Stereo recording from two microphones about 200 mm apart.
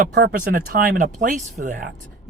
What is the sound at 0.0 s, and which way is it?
Speech, 55° right (ahead or behind).